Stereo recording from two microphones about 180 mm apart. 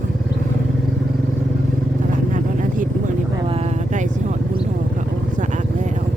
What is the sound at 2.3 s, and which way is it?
Vehicle, 45° right (ahead or behind).